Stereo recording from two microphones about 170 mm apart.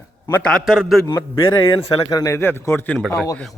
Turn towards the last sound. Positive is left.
turn(degrees=10)  # may be behind; listen again after turning